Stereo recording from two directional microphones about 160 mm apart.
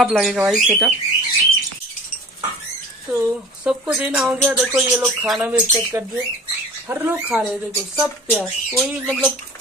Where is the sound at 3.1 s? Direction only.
5° right (ahead or behind).